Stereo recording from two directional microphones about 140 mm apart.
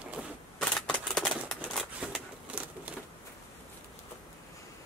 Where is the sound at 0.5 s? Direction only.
5° left (ahead or behind).